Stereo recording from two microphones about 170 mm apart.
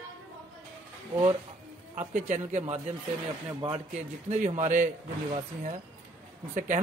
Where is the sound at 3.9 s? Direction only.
40° right (ahead or behind).